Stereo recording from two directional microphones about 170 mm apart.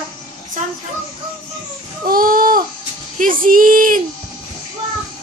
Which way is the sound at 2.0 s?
55° right (ahead or behind).